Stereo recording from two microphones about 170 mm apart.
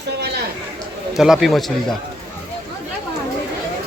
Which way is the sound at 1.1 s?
Centre (ahead or behind).